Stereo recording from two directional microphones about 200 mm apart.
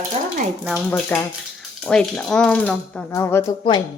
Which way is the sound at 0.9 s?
5° left (ahead or behind).